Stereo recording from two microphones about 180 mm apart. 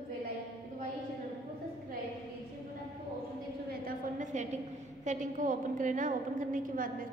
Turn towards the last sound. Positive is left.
turn(degrees=-50)  # may be behind; listen again after turning